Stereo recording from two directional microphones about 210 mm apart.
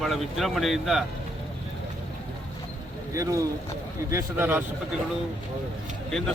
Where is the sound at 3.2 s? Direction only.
15° right (ahead or behind).